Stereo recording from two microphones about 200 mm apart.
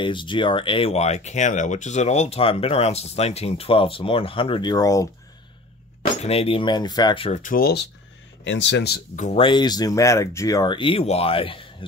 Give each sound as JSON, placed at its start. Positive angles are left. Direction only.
{"t": 0.0, "sound": "speech", "side_deg": 25}
{"t": 6.2, "sound": "speech", "side_deg": 30}
{"t": 8.5, "sound": "speech", "side_deg": 65}
{"t": 9.1, "sound": "speech", "side_deg": 35}